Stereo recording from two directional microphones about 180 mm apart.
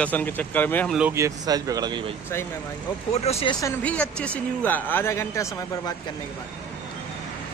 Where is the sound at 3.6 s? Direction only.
5° left (ahead or behind).